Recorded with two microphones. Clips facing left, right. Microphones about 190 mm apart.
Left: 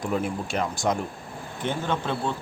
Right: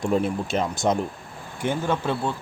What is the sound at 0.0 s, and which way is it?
Speech, 25° right (ahead or behind).